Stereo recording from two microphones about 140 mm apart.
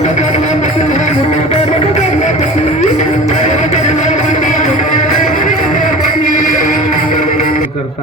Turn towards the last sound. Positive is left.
turn(degrees=70)  # may be behind; listen again after turning